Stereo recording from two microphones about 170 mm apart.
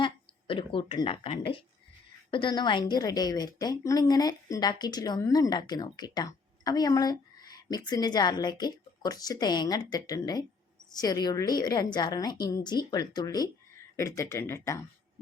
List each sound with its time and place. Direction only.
0.0 s a woman's voice: 30° left (ahead or behind)